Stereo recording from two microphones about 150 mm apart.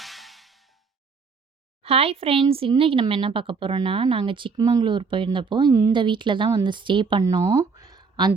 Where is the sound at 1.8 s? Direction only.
40° right (ahead or behind).